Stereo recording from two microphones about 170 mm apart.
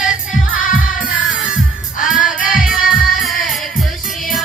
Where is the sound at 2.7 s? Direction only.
55° left (ahead or behind).